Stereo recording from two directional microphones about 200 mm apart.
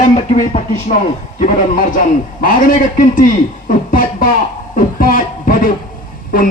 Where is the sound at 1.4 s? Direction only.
45° left (ahead or behind).